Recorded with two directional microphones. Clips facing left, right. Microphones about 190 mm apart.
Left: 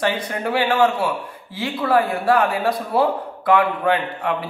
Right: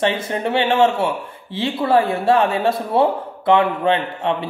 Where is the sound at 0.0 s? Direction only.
25° right (ahead or behind).